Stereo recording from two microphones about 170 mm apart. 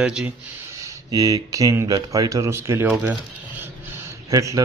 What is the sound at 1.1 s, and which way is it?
Speech, 20° right (ahead or behind).